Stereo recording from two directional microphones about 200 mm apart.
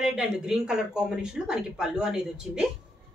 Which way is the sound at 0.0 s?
Centre (ahead or behind).